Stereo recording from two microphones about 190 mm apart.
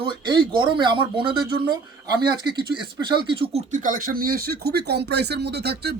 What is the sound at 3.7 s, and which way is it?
Speech, 45° right (ahead or behind).